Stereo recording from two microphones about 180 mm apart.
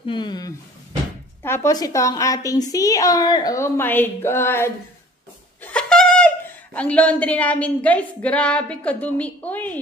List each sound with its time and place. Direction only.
0.0 s a woman's voice: 25° left (ahead or behind); by 9.8 s 10° left (ahead or behind)